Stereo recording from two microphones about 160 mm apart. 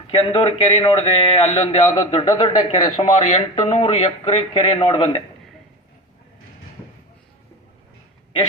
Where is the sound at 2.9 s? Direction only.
45° left (ahead or behind).